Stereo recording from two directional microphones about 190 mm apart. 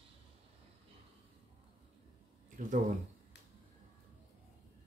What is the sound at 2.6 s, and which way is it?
Speech, 45° right (ahead or behind).